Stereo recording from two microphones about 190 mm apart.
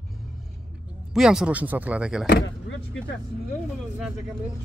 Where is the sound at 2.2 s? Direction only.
65° left (ahead or behind).